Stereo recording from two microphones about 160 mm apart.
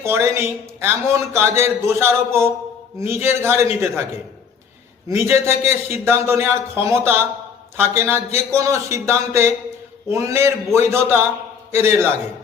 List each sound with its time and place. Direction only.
0.0 s a man's voice: 15° right (ahead or behind)
5.0 s a man's voice: 15° right (ahead or behind)